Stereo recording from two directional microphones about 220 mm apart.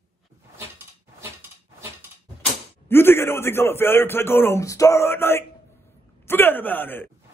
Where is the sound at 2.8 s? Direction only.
10° left (ahead or behind).